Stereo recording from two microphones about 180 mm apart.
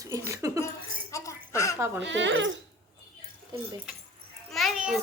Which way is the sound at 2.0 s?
90° right.